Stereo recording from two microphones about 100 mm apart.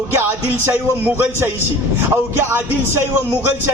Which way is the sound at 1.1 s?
25° right (ahead or behind).